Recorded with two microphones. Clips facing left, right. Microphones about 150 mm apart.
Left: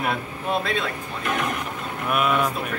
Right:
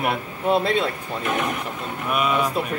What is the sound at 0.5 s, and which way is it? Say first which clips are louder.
Speech: right 5 dB; 35° right (ahead or behind).